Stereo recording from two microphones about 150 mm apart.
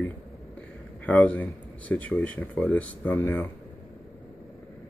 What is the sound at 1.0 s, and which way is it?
Speech, 10° left (ahead or behind).